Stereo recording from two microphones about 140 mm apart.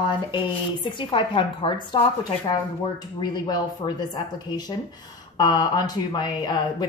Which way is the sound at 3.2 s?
30° left (ahead or behind).